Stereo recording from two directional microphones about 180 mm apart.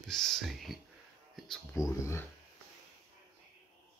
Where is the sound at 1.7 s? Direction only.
15° left (ahead or behind).